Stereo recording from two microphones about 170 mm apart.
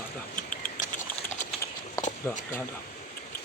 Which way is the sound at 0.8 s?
45° left (ahead or behind).